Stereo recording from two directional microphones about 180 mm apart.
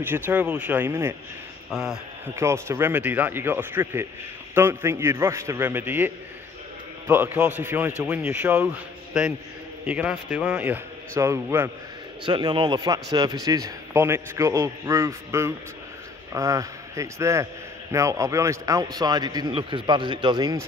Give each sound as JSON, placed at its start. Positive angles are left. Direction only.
{"t": 0.0, "sound": "a man's voice", "side_deg": -10}
{"t": 1.7, "sound": "speech", "side_deg": 0}
{"t": 2.3, "sound": "a man's voice", "side_deg": -15}
{"t": 9.8, "sound": "a man's voice", "side_deg": -10}
{"t": 12.3, "sound": "a man's voice", "side_deg": -25}